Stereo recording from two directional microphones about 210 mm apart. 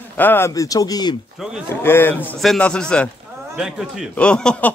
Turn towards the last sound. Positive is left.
turn(degrees=5)  # may be behind; listen again after turning